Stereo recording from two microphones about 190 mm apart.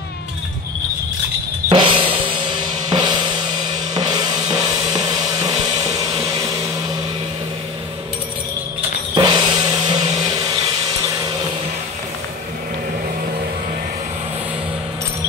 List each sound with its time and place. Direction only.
1.7 s drum kit: 25° right (ahead or behind)
3.9 s music: 20° right (ahead or behind)
5.9 s vehicle: 20° right (ahead or behind)
9.1 s music: 20° right (ahead or behind)